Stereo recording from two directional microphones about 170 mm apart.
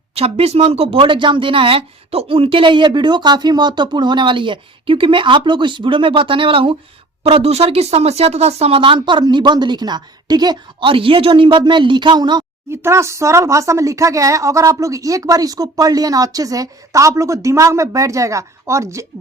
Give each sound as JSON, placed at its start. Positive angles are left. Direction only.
{"t": 0.1, "sound": "speech", "side_deg": -35}